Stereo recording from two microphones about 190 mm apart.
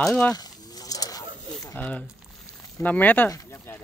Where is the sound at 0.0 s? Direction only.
5° left (ahead or behind).